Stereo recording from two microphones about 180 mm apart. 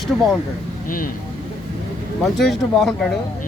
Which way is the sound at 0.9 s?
50° left (ahead or behind).